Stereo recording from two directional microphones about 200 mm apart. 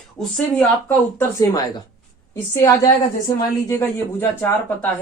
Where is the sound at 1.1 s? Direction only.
20° left (ahead or behind).